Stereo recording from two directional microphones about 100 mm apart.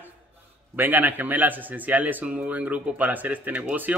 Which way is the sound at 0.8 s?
20° right (ahead or behind).